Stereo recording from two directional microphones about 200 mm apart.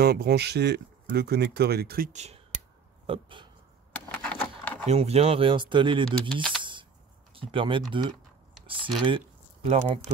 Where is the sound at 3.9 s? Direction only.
10° left (ahead or behind).